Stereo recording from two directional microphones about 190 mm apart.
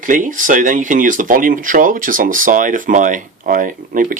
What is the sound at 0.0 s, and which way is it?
Speech, 45° right (ahead or behind).